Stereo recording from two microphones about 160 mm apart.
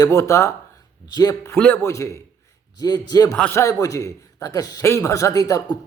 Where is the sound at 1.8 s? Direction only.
20° left (ahead or behind).